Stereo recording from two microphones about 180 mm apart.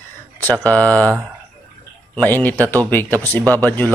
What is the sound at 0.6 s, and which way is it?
Speech, 5° left (ahead or behind).